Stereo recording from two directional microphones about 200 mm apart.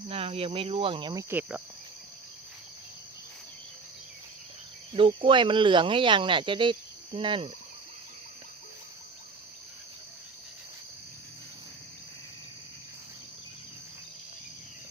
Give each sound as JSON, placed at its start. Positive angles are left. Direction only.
{"t": 0.1, "sound": "speech", "side_deg": -30}
{"t": 1.3, "sound": "insect", "side_deg": -10}
{"t": 4.9, "sound": "speech", "side_deg": -25}